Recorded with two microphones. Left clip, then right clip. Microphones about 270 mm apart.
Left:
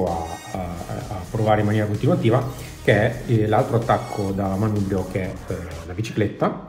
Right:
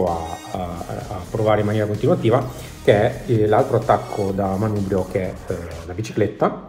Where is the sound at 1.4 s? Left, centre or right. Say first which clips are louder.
Right 1 dB; centre.